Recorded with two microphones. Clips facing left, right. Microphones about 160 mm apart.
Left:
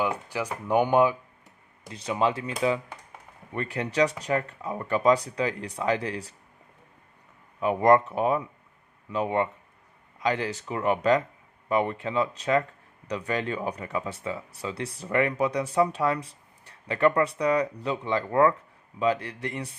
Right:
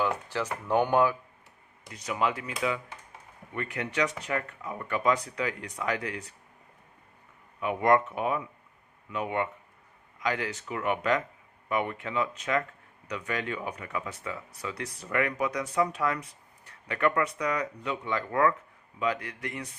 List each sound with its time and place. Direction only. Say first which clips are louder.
0.0 s speech: left 1 dB; 10° left (ahead or behind)
1.9 s speech: left 4 dB; 30° left (ahead or behind)
7.6 s speech: left 4 dB; 35° left (ahead or behind)